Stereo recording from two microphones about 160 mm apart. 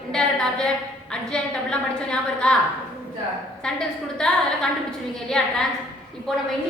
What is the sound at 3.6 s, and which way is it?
A woman's voice, 5° left (ahead or behind).